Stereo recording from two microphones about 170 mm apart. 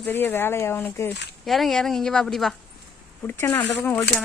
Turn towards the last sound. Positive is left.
turn(degrees=10)  # may be behind; listen again after turning